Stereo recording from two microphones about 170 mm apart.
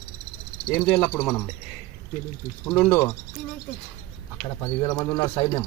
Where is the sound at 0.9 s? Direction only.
5° left (ahead or behind).